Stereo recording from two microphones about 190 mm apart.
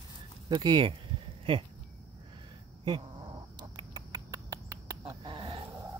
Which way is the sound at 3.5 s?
25° right (ahead or behind).